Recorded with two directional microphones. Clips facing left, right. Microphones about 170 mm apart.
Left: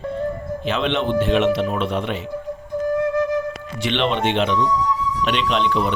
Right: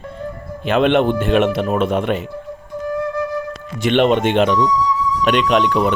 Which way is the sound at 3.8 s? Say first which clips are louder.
Right 6 dB; 45° right (ahead or behind).